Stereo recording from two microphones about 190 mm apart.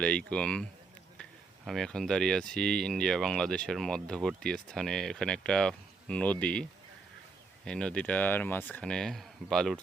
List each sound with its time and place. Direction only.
0.0 s speech: 5° left (ahead or behind)